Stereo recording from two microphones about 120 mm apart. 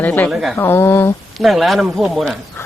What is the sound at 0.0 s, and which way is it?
Speech, 15° left (ahead or behind).